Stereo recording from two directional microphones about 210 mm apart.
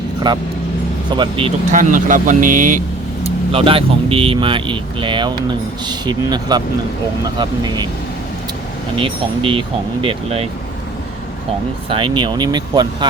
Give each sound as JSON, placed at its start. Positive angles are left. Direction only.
{"t": 0.3, "sound": "speech", "side_deg": -20}
{"t": 1.7, "sound": "speech", "side_deg": -40}
{"t": 3.2, "sound": "speech", "side_deg": -25}
{"t": 9.0, "sound": "speech", "side_deg": -25}
{"t": 11.9, "sound": "speech", "side_deg": -25}